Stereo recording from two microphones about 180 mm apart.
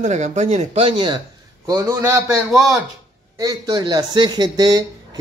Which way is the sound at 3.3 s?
20° right (ahead or behind).